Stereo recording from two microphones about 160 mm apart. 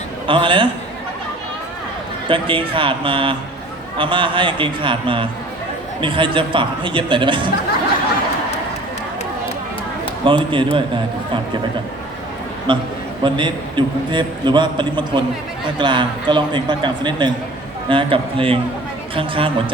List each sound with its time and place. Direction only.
0.3 s a man's voice: 30° right (ahead or behind)
2.2 s a man's voice: 30° right (ahead or behind)
10.2 s a man's voice: 30° right (ahead or behind)
12.7 s a man's voice: 30° right (ahead or behind)